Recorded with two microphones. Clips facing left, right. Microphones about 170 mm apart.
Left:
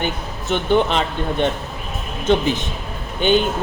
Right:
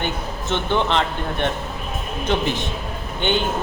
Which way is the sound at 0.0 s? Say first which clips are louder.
Left 1 dB; 15° left (ahead or behind).